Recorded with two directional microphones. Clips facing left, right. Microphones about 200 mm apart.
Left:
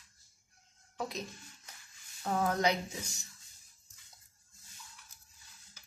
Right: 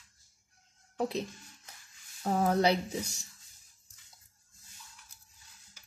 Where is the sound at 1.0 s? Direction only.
35° right (ahead or behind).